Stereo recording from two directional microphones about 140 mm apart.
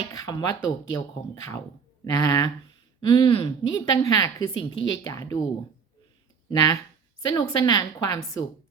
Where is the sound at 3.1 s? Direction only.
40° left (ahead or behind).